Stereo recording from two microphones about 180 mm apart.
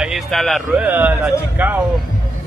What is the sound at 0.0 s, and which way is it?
Speech, centre (ahead or behind).